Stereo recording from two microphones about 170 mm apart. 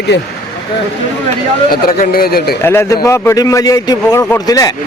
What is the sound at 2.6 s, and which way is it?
A man's voice, 15° left (ahead or behind).